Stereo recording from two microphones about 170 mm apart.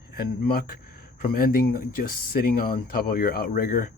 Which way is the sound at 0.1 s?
65° left (ahead or behind).